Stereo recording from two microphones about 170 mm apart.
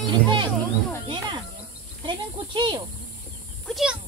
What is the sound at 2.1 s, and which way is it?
Speech, 25° right (ahead or behind).